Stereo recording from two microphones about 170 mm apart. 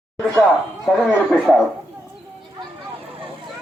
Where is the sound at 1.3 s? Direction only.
Centre (ahead or behind).